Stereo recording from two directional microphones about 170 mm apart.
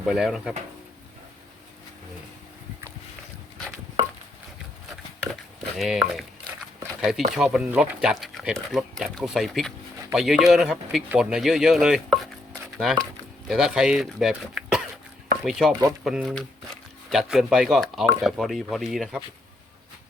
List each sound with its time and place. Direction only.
0.0 s speech: centre (ahead or behind)
5.2 s a sound: centre (ahead or behind)
7.0 s speech: centre (ahead or behind)